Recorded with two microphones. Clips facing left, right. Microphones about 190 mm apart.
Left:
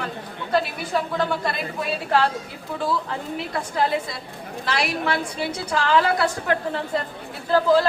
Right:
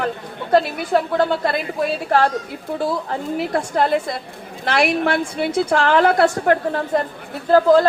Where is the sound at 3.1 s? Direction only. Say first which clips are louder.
Right 7 dB; 55° right (ahead or behind).